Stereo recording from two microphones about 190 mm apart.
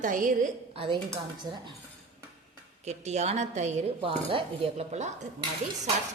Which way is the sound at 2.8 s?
35° right (ahead or behind).